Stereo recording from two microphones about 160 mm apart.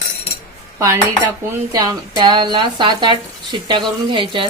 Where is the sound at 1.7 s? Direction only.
25° right (ahead or behind).